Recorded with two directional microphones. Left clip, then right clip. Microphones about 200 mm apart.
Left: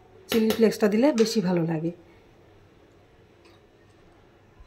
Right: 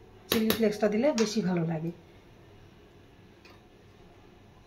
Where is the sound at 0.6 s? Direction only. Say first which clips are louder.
Left 5 dB; 50° left (ahead or behind).